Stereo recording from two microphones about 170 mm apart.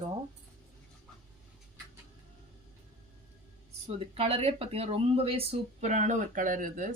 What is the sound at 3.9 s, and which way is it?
Speech, 35° right (ahead or behind).